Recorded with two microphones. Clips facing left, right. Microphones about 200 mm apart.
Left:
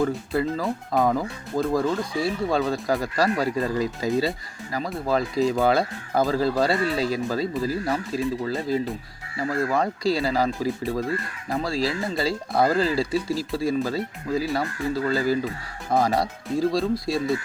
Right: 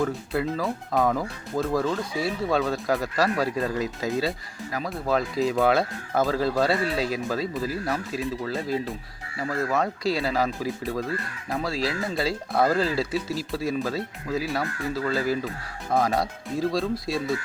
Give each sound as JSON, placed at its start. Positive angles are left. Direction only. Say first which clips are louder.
{"t": 0.0, "sound": "speech", "louder": "left 2 dB", "side_deg": 0}